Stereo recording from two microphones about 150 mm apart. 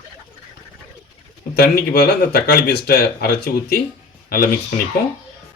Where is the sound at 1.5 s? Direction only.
90° left.